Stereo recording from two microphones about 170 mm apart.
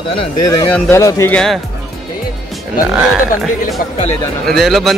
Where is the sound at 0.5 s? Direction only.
10° left (ahead or behind).